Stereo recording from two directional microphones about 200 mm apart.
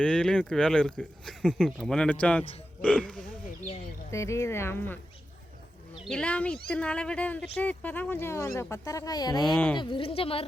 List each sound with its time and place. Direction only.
0.0 s speech: 5° left (ahead or behind)
6.1 s speech: 5° left (ahead or behind)
9.4 s speech: 5° left (ahead or behind)
9.7 s speech: 25° left (ahead or behind)